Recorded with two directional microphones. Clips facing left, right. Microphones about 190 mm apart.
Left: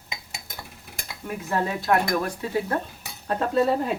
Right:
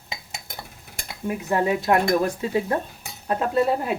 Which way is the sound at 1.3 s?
15° right (ahead or behind).